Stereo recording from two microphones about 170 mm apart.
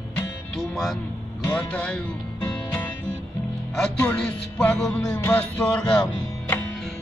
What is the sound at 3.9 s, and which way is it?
Music, 10° left (ahead or behind).